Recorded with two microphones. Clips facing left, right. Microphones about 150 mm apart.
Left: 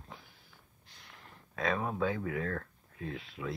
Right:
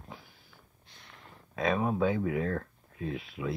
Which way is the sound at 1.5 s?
20° right (ahead or behind).